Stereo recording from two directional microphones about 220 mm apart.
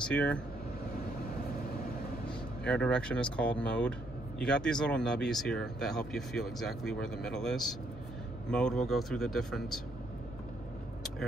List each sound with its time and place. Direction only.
0.0 s speech: 5° left (ahead or behind)
2.6 s speech: 5° left (ahead or behind)